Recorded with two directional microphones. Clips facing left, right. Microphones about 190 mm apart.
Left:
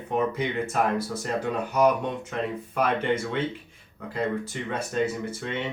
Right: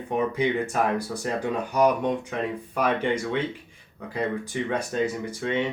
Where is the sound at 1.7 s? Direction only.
15° right (ahead or behind).